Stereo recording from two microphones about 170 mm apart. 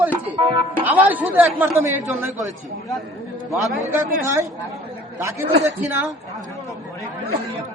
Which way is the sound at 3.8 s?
15° right (ahead or behind).